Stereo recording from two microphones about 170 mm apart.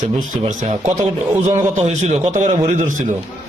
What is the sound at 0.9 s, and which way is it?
Speech, 20° right (ahead or behind).